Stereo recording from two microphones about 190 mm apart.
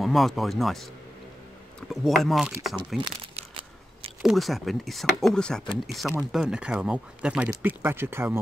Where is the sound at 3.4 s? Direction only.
35° right (ahead or behind).